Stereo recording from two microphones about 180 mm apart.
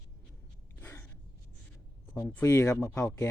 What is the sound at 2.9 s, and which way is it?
Speech, 5° left (ahead or behind).